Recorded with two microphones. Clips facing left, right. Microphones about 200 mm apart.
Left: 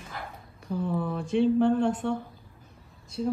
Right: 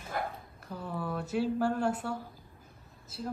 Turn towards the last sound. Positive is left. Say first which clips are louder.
# left 9 dB
turn(degrees=-5)  # may be behind; listen again after turning